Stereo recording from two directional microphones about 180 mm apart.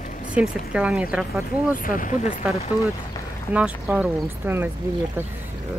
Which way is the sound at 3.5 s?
10° right (ahead or behind).